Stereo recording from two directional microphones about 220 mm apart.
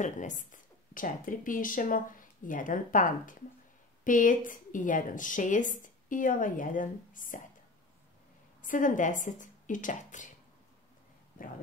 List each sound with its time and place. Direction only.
0.0 s a woman's voice: 35° left (ahead or behind)
8.6 s a woman's voice: 35° left (ahead or behind)
11.4 s speech: 40° left (ahead or behind)